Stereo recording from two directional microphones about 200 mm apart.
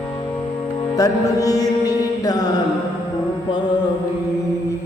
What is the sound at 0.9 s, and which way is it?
Mantra, 15° left (ahead or behind).